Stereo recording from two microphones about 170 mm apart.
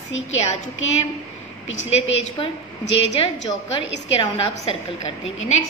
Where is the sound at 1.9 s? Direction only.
35° left (ahead or behind).